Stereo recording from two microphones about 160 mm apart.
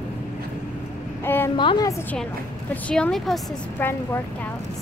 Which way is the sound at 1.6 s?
25° left (ahead or behind).